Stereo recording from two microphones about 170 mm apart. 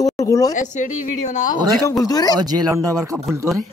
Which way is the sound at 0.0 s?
20° left (ahead or behind).